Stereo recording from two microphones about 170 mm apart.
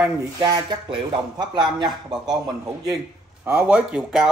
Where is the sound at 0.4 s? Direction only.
25° right (ahead or behind).